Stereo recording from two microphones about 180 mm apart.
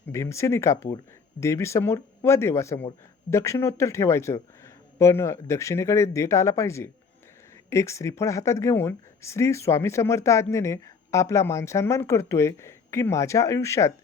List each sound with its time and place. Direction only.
0.1 s a man's voice: 15° left (ahead or behind)